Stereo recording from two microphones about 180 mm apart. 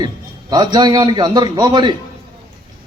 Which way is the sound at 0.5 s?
25° right (ahead or behind).